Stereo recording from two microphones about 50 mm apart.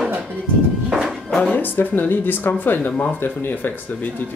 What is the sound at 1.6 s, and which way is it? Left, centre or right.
Speech, left.